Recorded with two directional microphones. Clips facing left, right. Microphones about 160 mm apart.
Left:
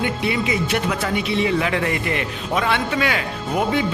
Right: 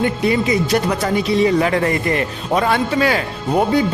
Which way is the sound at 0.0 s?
40° right (ahead or behind).